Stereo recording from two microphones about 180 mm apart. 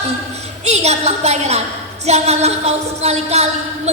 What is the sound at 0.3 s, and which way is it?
A woman's voice, 35° right (ahead or behind).